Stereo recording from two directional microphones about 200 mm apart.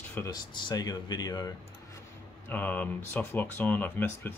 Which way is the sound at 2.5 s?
10° left (ahead or behind).